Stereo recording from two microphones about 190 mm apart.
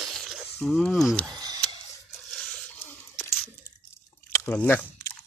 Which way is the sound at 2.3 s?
5° left (ahead or behind).